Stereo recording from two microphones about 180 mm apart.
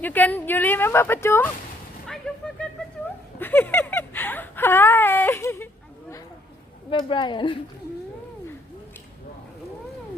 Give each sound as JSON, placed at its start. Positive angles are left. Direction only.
{"t": 0.0, "sound": "a woman's voice", "side_deg": 10}
{"t": 2.0, "sound": "a sound", "side_deg": 5}
{"t": 3.3, "sound": "whimper", "side_deg": 10}
{"t": 6.9, "sound": "a woman's voice", "side_deg": 25}